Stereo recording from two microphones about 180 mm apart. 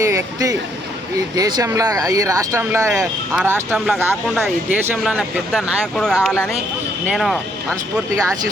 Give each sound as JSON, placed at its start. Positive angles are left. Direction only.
{"t": 0.0, "sound": "speech", "side_deg": -15}
{"t": 4.4, "sound": "speech", "side_deg": 0}